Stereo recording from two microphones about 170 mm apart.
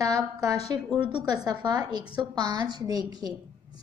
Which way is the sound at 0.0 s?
20° right (ahead or behind).